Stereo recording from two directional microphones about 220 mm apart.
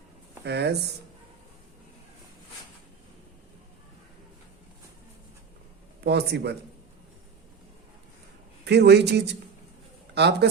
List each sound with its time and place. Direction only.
0.4 s speech: 50° right (ahead or behind)
6.1 s speech: 50° right (ahead or behind)
8.6 s speech: 50° right (ahead or behind)